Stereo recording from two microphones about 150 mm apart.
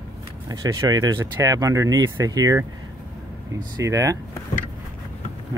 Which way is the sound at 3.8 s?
20° right (ahead or behind).